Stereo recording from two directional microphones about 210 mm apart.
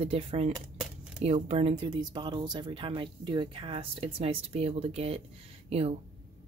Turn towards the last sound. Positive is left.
turn(degrees=-30)  # may be behind; listen again after turning